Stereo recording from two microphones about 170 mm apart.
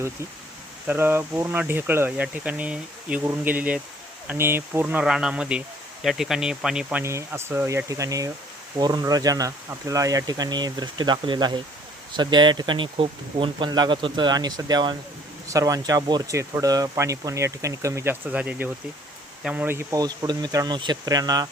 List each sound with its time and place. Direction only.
0.9 s speech: 10° right (ahead or behind)
7.0 s speech: 15° right (ahead or behind)